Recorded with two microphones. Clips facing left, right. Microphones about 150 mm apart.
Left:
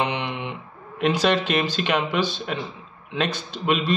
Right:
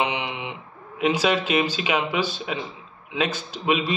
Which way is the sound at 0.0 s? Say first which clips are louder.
Even; 10° right (ahead or behind).